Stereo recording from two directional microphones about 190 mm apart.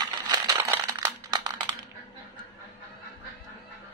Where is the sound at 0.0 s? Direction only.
20° right (ahead or behind).